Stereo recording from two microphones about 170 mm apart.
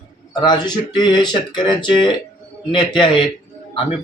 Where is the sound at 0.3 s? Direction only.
25° left (ahead or behind).